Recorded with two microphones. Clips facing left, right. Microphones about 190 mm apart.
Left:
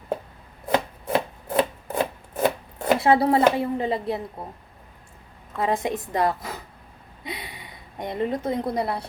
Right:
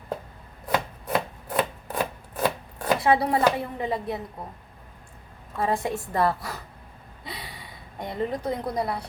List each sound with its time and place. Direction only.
0.7 s rub: 25° left (ahead or behind)
5.5 s a woman's voice: 20° left (ahead or behind)
7.3 s a sound: 20° left (ahead or behind)